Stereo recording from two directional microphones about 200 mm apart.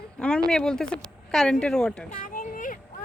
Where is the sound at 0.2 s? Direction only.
5° left (ahead or behind).